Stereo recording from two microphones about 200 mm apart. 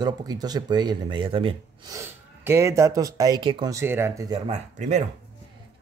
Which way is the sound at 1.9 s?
10° right (ahead or behind).